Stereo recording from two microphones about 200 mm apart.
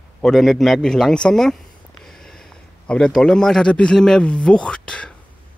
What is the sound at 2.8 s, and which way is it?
A man's voice, 5° left (ahead or behind).